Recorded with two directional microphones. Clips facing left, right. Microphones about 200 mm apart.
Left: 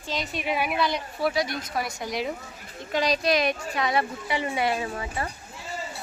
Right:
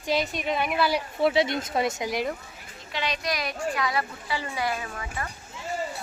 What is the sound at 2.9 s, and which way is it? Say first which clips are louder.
Speech: left 6 dB; 40° left (ahead or behind).